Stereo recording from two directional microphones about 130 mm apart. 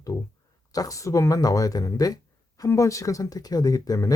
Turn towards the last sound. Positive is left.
turn(degrees=30)  # may be behind; listen again after turning